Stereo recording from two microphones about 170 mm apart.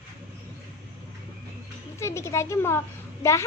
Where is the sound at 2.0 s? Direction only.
15° left (ahead or behind).